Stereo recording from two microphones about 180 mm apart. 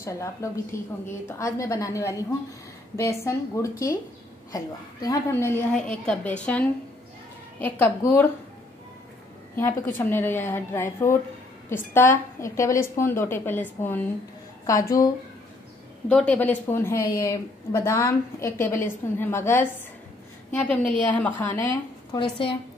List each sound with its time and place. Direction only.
0.0 s a woman's voice: 15° left (ahead or behind)
9.6 s a woman's voice: 10° left (ahead or behind)
16.1 s a woman's voice: 5° left (ahead or behind)
22.1 s a woman's voice: 30° left (ahead or behind)